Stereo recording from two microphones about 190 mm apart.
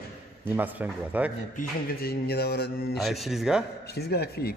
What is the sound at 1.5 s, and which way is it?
A man's voice, 55° left (ahead or behind).